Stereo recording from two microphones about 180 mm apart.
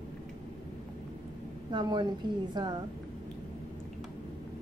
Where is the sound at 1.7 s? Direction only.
25° right (ahead or behind).